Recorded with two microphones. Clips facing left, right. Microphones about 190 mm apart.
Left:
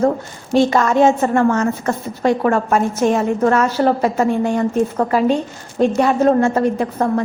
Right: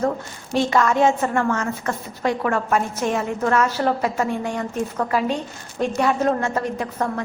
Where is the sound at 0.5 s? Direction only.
35° left (ahead or behind).